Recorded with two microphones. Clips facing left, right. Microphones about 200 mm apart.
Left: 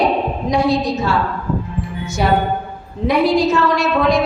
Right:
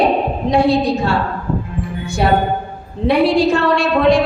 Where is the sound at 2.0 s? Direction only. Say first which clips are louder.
Right 1 dB; 30° right (ahead or behind).